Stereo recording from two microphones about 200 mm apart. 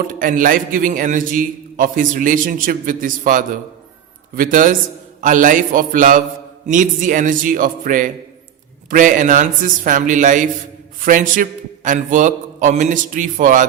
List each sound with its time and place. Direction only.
0.0 s a man's voice: 45° right (ahead or behind)